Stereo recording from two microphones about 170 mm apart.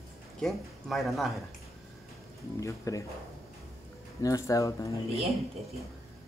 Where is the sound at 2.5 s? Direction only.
20° left (ahead or behind).